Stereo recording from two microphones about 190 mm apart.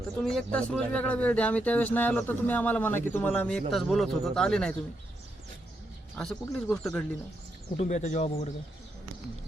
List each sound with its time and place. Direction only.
0.2 s speech: 5° left (ahead or behind)
6.1 s speech: centre (ahead or behind)
7.8 s speech: 35° left (ahead or behind)